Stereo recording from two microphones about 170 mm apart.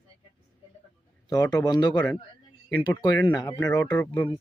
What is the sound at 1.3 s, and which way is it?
Speech, 25° left (ahead or behind).